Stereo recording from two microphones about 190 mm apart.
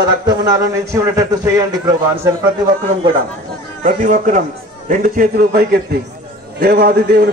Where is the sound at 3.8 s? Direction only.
45° right (ahead or behind).